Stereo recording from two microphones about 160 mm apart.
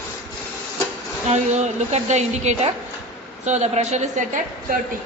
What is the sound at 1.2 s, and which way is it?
A woman's voice, 45° right (ahead or behind).